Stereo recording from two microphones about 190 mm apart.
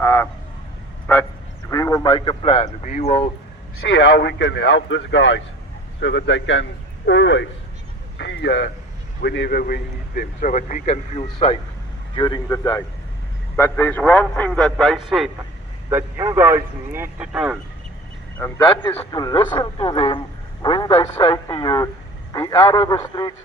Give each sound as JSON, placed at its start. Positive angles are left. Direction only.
{"t": 0.0, "sound": "a sound", "side_deg": 15}
{"t": 1.1, "sound": "a man's voice", "side_deg": 10}
{"t": 2.8, "sound": "speech", "side_deg": 40}
{"t": 3.8, "sound": "a man's voice", "side_deg": 65}
{"t": 18.3, "sound": "a man's voice", "side_deg": 10}
{"t": 19.1, "sound": "a man's voice", "side_deg": 20}